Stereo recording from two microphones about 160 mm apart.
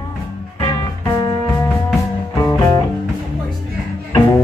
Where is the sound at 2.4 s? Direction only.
20° left (ahead or behind).